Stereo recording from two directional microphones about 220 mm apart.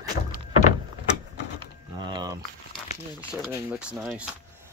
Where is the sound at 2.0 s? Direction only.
20° right (ahead or behind).